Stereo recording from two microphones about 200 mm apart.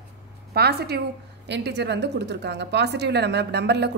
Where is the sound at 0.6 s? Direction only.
55° right (ahead or behind).